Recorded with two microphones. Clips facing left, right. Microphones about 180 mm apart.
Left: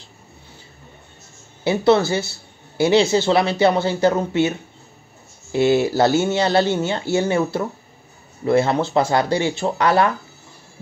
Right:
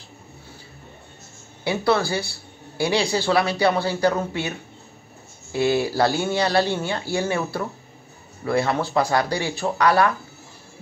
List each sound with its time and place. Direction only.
1.6 s speech: 25° left (ahead or behind)